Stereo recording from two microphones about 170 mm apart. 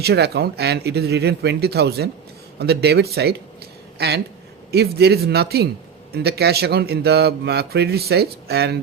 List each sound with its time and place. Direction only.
0.0 s speech: 70° right (ahead or behind)